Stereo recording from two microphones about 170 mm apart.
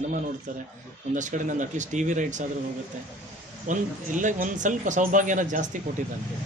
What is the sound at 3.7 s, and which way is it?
A man's voice, 50° right (ahead or behind).